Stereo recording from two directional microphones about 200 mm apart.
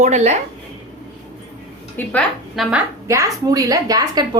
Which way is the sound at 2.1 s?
5° right (ahead or behind).